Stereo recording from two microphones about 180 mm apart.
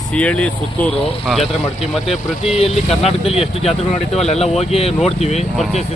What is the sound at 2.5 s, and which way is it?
Speech, 35° left (ahead or behind).